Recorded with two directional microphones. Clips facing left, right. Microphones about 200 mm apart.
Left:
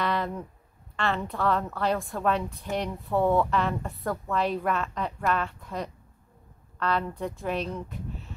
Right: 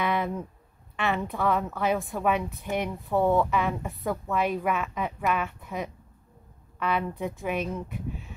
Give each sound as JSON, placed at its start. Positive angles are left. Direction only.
{"t": 0.0, "sound": "a sound", "side_deg": -5}
{"t": 0.9, "sound": "a woman's voice", "side_deg": -15}
{"t": 1.2, "sound": "a woman's voice", "side_deg": 0}